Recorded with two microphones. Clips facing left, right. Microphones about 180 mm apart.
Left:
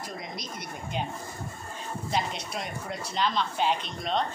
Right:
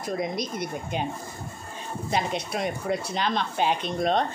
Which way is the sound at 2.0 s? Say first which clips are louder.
Right 4 dB; 55° right (ahead or behind).